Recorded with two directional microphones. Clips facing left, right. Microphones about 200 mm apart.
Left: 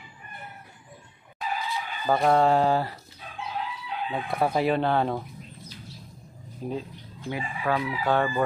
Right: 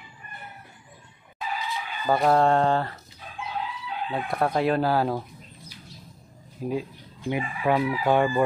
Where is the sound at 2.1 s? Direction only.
Centre (ahead or behind).